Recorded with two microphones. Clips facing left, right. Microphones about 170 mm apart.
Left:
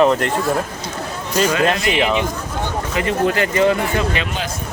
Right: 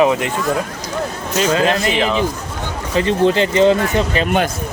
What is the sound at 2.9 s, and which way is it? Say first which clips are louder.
Speech: right 5 dB; 30° right (ahead or behind).